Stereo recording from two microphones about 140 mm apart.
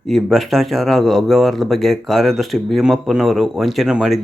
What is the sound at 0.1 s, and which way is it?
Speech, centre (ahead or behind).